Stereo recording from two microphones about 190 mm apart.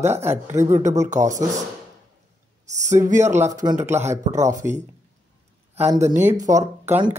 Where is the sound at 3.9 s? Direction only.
35° right (ahead or behind).